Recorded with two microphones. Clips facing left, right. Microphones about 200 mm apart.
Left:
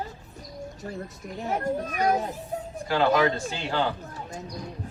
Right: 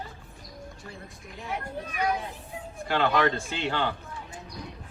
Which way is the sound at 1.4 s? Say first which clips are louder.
Left 7 dB; 45° left (ahead or behind).